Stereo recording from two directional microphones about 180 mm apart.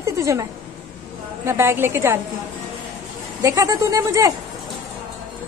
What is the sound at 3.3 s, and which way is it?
Speech, 20° right (ahead or behind).